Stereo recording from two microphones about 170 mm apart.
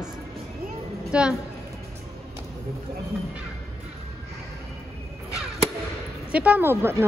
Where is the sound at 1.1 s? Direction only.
5° right (ahead or behind).